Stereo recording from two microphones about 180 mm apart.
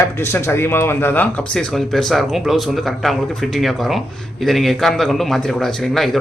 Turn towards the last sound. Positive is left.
turn(degrees=0)  # may be behind; listen again after turning